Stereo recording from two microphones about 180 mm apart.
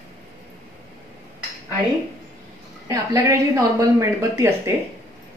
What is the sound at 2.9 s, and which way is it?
A woman's voice, 20° right (ahead or behind).